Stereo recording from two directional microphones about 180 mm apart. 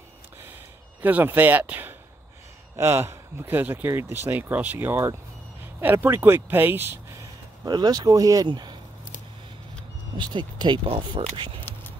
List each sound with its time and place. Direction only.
1.0 s speech: 10° right (ahead or behind)
10.1 s speech: 25° right (ahead or behind)